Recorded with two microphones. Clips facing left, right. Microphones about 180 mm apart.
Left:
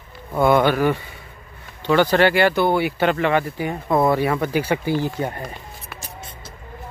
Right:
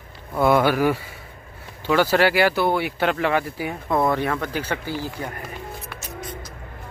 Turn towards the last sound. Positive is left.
turn(degrees=25)  # may be behind; listen again after turning